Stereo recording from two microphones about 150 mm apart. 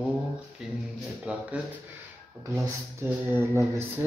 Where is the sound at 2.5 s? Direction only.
20° right (ahead or behind).